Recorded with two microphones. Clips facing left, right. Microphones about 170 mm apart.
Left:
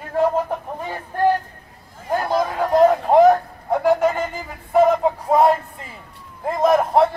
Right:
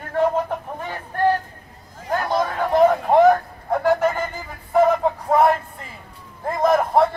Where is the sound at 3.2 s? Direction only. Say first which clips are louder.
Left 1 dB; 15° left (ahead or behind).